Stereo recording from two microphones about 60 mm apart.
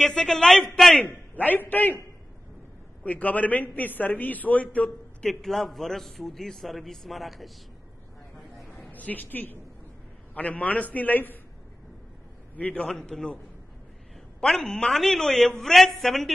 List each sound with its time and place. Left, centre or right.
0.0 s a woman's voice: centre
1.0 s a man's voice: left
3.0 s a man's voice: left
5.2 s a man's voice: centre
8.9 s a woman's voice: left
12.5 s a man's voice: left
12.8 s a woman's voice: centre
14.4 s a woman's voice: centre